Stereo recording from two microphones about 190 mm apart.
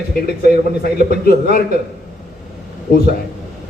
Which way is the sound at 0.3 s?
55° left (ahead or behind).